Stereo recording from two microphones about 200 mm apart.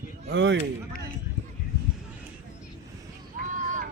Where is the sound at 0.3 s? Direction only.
65° right (ahead or behind).